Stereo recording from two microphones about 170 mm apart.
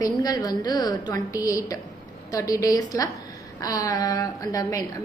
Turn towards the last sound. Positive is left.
turn(degrees=20)  # may be behind; listen again after turning